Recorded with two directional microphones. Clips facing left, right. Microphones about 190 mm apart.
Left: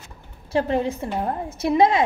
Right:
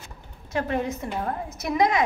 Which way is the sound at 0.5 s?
30° left (ahead or behind).